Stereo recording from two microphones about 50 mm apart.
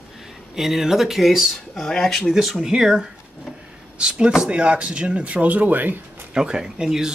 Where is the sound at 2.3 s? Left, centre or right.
Centre; by 6.0 s right.